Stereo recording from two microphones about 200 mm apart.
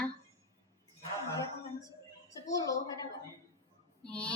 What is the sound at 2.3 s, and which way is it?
Speech, 15° left (ahead or behind).